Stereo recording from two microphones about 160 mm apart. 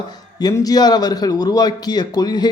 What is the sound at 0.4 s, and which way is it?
A man's voice, 25° left (ahead or behind).